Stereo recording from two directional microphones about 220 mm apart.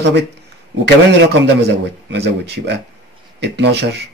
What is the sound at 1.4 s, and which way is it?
Speech, 50° right (ahead or behind).